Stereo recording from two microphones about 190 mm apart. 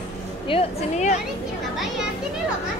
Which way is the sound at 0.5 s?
35° left (ahead or behind).